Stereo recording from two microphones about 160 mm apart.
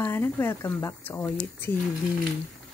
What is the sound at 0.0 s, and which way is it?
Speech, 15° left (ahead or behind).